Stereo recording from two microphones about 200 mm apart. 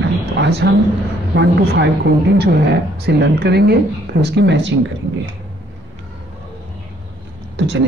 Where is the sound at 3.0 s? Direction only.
55° right (ahead or behind).